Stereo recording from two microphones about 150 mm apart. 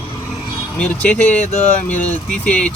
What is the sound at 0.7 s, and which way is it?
Speech, 10° left (ahead or behind).